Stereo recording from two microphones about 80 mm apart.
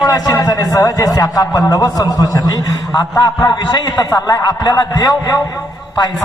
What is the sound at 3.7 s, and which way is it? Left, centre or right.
Speech, left.